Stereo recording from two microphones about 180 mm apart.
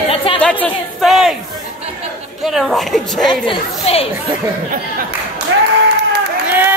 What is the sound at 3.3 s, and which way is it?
Speech, 30° left (ahead or behind).